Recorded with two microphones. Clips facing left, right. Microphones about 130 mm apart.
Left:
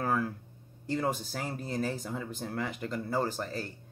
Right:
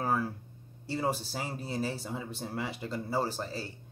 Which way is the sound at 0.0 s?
10° right (ahead or behind).